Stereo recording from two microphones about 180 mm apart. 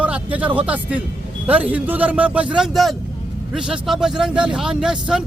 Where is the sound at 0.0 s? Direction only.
10° right (ahead or behind).